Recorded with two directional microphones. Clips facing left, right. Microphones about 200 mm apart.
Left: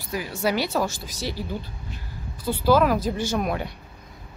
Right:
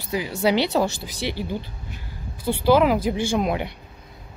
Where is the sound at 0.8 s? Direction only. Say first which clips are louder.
Right 3 dB; 65° right (ahead or behind).